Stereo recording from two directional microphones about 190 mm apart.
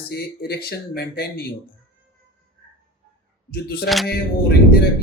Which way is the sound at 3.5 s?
55° left (ahead or behind).